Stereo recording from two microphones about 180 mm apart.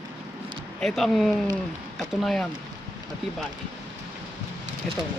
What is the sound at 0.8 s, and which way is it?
Speech, centre (ahead or behind).